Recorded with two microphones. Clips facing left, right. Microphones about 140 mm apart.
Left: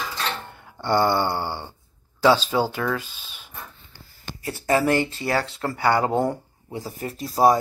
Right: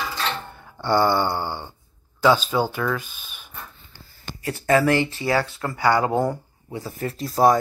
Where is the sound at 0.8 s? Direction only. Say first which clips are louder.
Right 1 dB; 25° left (ahead or behind).